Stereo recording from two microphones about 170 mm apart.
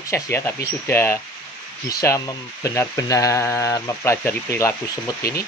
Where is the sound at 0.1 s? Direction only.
15° left (ahead or behind).